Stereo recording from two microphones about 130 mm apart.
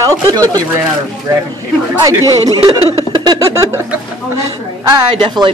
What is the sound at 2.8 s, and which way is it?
Speech, 45° right (ahead or behind).